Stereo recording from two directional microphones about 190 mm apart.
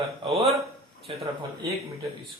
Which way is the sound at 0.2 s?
30° right (ahead or behind).